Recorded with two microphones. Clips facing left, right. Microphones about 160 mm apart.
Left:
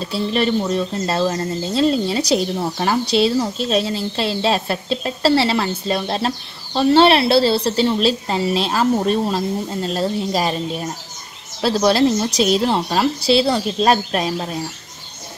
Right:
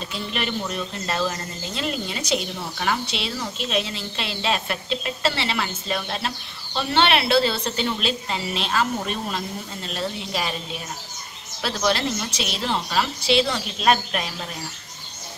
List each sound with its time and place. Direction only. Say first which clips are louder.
0.0 s speech: left 9 dB; 35° left (ahead or behind)
11.6 s speech: left 8 dB; 35° left (ahead or behind)